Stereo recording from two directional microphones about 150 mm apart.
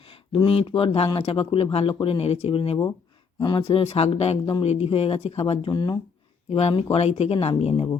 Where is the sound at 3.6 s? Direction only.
45° left (ahead or behind).